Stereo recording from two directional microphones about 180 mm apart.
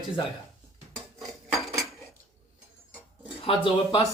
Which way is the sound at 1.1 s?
Centre (ahead or behind).